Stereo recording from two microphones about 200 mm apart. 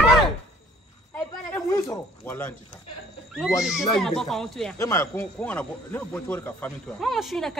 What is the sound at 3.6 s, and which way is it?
Speech, 5° right (ahead or behind).